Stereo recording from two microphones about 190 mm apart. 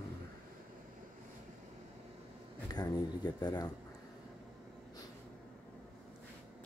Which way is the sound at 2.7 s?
20° left (ahead or behind).